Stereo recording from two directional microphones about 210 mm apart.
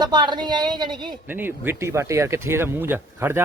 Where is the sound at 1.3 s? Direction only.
10° right (ahead or behind).